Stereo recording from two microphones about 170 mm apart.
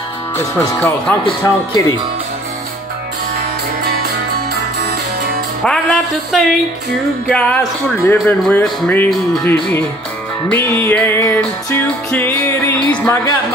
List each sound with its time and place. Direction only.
0.4 s speech: 20° left (ahead or behind)
0.7 s music: 5° left (ahead or behind)
1.4 s music: 15° left (ahead or behind)
5.6 s music: 5° left (ahead or behind)